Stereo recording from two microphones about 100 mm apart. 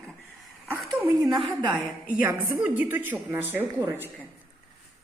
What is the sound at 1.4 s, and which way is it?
Speech, 60° right (ahead or behind).